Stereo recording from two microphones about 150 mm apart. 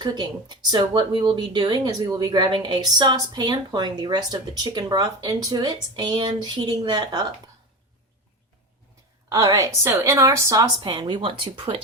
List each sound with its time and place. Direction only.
0.0 s speech: 30° right (ahead or behind)
9.3 s speech: 25° right (ahead or behind)
10.8 s speech: 30° right (ahead or behind)